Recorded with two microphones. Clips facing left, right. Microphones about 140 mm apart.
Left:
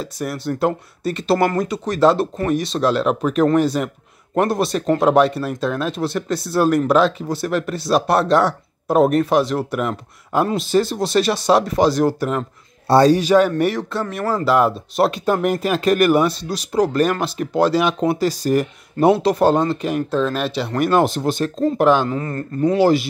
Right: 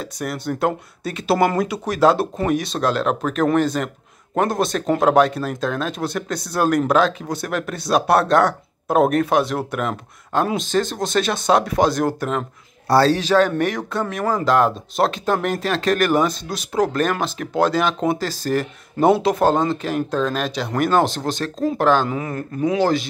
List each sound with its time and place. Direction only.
0.0 s speech: centre (ahead or behind)
12.8 s a man's voice: 20° left (ahead or behind)
13.1 s speech: 10° left (ahead or behind)
22.1 s speech: 10° right (ahead or behind)
22.8 s speech: 5° left (ahead or behind)